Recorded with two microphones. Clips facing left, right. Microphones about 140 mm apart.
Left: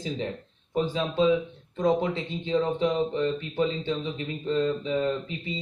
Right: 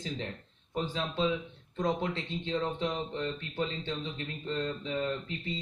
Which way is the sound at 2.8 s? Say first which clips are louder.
Left 8 dB; 90° left.